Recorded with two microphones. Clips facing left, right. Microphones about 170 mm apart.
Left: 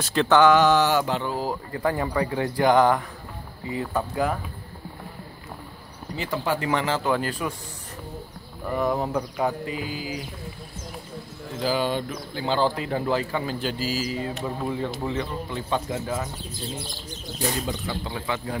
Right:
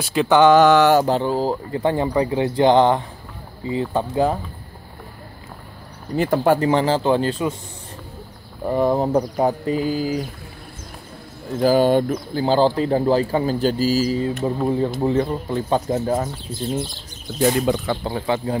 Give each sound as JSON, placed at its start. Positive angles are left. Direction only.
{"t": 0.0, "sound": "mantra", "side_deg": -10}
{"t": 0.6, "sound": "speech", "side_deg": -65}
{"t": 0.9, "sound": "speech", "side_deg": -35}
{"t": 6.1, "sound": "speech", "side_deg": -50}
{"t": 6.7, "sound": "speech", "side_deg": -30}
{"t": 8.6, "sound": "speech", "side_deg": -30}
{"t": 11.6, "sound": "speech", "side_deg": -45}
{"t": 17.4, "sound": "speech", "side_deg": -60}
{"t": 18.0, "sound": "speech", "side_deg": -35}